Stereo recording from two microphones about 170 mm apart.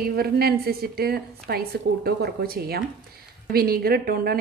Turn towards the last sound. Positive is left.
turn(degrees=-60)  # may be behind; listen again after turning